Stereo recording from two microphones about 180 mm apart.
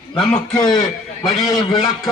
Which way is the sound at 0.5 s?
25° left (ahead or behind).